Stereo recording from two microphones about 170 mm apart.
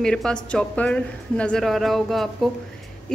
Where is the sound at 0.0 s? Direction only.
5° left (ahead or behind).